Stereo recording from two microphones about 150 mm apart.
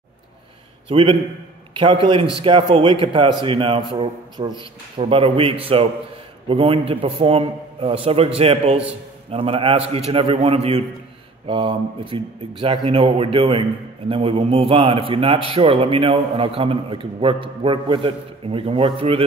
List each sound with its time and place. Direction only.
0.8 s a man's voice: 40° right (ahead or behind)